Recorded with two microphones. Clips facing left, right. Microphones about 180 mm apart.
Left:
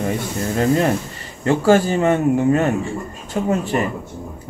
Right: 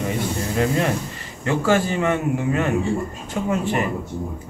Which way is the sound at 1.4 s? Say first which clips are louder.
Left 5 dB; 35° left (ahead or behind).